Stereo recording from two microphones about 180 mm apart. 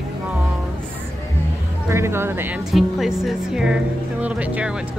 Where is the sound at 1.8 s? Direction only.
15° right (ahead or behind).